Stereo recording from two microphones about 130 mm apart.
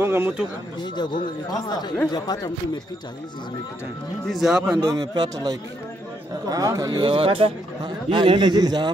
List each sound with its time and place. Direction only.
0.0 s speech: 15° right (ahead or behind)
0.7 s speech: 35° left (ahead or behind)
2.1 s speech: 30° left (ahead or behind)
4.3 s speech: 5° right (ahead or behind)
4.7 s speech: 25° right (ahead or behind)